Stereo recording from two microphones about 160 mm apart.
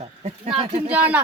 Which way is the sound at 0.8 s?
10° right (ahead or behind).